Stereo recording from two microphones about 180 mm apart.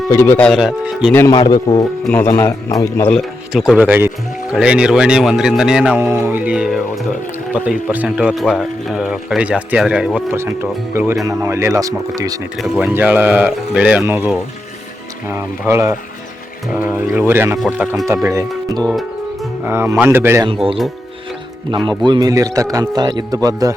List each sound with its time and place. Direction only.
0.1 s speech: 15° left (ahead or behind)
1.1 s speech: 20° left (ahead or behind)
3.5 s a man's voice: 5° right (ahead or behind); by 12.4 s 20° right (ahead or behind)
12.5 s speech: 5° right (ahead or behind)
17.7 s speech: centre (ahead or behind)
18.1 s speech: 15° right (ahead or behind)
18.8 s music: centre (ahead or behind)
19.6 s speech: 10° right (ahead or behind)
21.7 s a man's voice: 25° right (ahead or behind)